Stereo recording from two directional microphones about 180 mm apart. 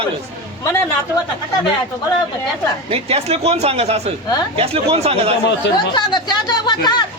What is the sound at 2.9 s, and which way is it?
Speech, 35° right (ahead or behind).